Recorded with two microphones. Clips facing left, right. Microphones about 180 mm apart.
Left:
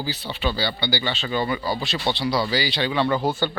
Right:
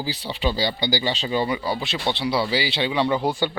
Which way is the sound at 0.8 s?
15° right (ahead or behind).